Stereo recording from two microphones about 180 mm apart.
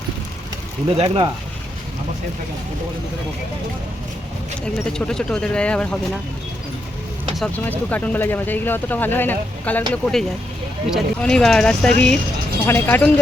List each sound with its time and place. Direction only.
0.9 s speech: 30° right (ahead or behind)
4.6 s speech: 5° left (ahead or behind)
7.3 s speech: 5° left (ahead or behind)